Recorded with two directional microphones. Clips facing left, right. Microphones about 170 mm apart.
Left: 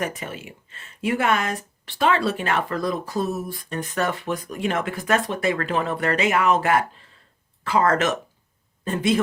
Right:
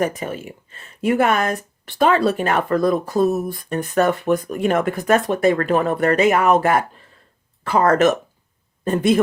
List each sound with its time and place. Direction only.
0.0 s speech: 40° right (ahead or behind)